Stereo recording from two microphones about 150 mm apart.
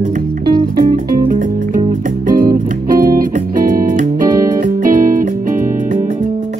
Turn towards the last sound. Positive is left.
turn(degrees=-60)  # may be behind; listen again after turning